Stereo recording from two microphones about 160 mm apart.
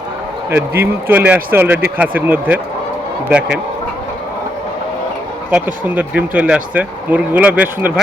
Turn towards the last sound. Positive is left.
turn(degrees=-10)  # may be behind; listen again after turning